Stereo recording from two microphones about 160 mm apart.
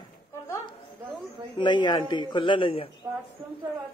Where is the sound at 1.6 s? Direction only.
30° left (ahead or behind).